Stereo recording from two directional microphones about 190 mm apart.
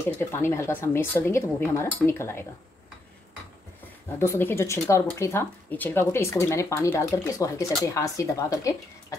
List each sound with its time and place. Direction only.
0.2 s speech: 15° left (ahead or behind)
4.2 s speech: 10° left (ahead or behind)